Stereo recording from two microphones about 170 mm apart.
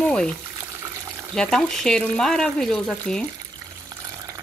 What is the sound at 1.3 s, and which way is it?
Speech, 5° left (ahead or behind).